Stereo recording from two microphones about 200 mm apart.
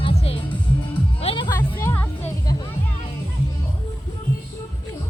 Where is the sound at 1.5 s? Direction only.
15° left (ahead or behind).